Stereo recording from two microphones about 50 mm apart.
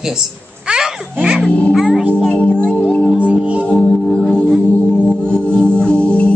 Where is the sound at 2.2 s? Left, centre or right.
Centre; by 3.0 s left.